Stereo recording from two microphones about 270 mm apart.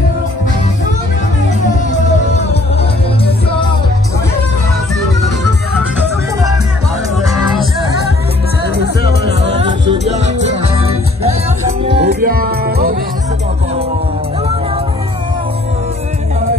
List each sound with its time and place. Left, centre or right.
9.8 s music: right
12.0 s music: right